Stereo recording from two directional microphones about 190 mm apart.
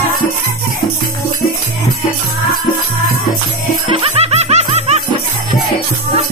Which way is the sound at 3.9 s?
30° right (ahead or behind).